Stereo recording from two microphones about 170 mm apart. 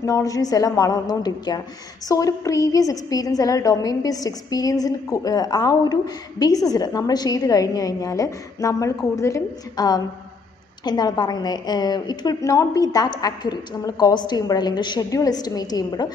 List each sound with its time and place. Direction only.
0.0 s a woman's voice: 20° left (ahead or behind)